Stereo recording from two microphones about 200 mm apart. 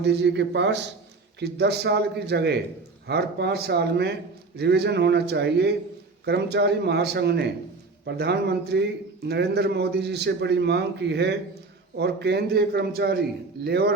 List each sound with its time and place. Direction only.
0.0 s a man's voice: 60° right (ahead or behind)